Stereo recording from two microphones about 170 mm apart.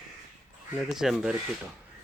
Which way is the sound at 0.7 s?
Centre (ahead or behind).